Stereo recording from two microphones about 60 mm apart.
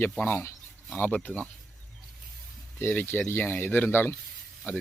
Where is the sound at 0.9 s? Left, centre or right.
Left.